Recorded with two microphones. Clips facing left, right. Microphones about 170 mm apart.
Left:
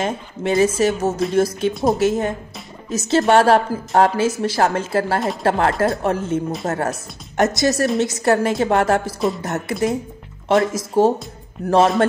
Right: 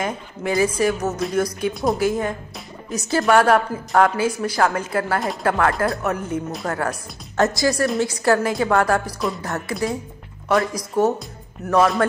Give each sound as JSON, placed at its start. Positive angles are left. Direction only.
{"t": 0.0, "sound": "speech", "side_deg": 25}
{"t": 1.7, "sound": "a woman's voice", "side_deg": 0}
{"t": 2.0, "sound": "speech", "side_deg": 25}